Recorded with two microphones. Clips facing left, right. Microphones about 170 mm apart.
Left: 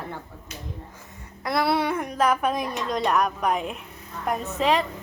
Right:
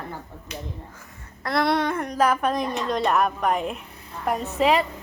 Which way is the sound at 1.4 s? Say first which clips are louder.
Right 1 dB; 5° left (ahead or behind).